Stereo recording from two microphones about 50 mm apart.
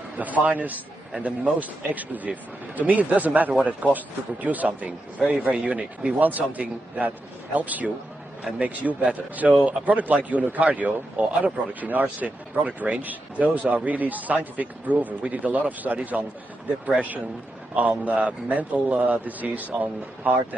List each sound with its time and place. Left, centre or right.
0.2 s speech: right
6.1 s speech: right
17.7 s speech: right